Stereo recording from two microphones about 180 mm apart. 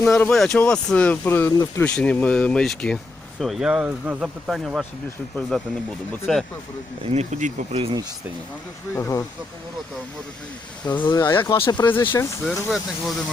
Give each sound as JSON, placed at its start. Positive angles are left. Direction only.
{"t": 0.1, "sound": "speech", "side_deg": 0}
{"t": 7.1, "sound": "speech", "side_deg": -40}
{"t": 9.0, "sound": "speech", "side_deg": 15}
{"t": 11.1, "sound": "speech", "side_deg": 25}
{"t": 11.9, "sound": "speech", "side_deg": 10}
{"t": 12.5, "sound": "speech", "side_deg": -5}